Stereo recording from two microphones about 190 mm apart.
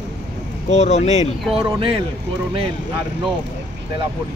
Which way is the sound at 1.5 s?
30° right (ahead or behind).